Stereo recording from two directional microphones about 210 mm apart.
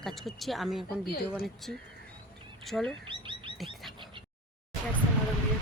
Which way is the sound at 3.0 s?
25° right (ahead or behind).